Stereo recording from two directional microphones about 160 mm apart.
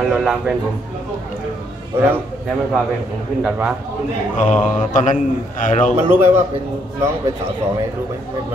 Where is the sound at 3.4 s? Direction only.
5° right (ahead or behind).